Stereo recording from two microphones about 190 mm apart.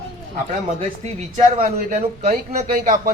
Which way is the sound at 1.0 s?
35° right (ahead or behind).